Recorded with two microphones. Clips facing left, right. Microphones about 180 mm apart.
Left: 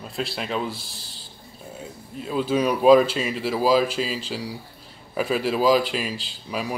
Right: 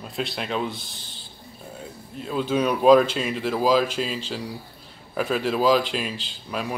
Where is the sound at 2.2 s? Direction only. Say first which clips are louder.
Left 1 dB; 5° left (ahead or behind).